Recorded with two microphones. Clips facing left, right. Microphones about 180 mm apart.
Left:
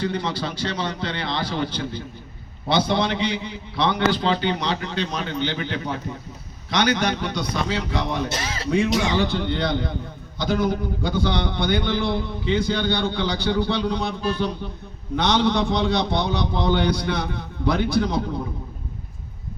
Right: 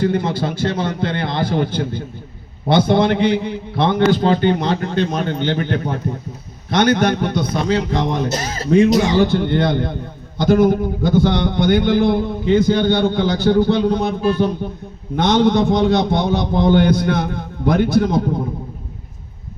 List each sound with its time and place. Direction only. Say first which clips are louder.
0.0 s a man's voice: right 7 dB; 50° right (ahead or behind)